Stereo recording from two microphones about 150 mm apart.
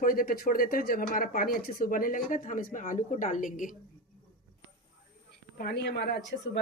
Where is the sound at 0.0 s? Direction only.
70° left (ahead or behind).